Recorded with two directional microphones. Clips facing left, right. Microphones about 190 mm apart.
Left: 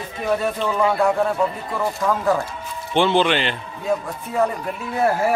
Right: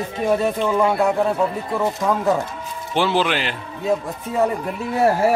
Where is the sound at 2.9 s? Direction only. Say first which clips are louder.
Left 2 dB; 5° right (ahead or behind).